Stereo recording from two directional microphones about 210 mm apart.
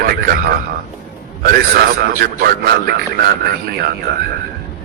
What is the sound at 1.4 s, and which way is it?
A man's voice, 45° right (ahead or behind).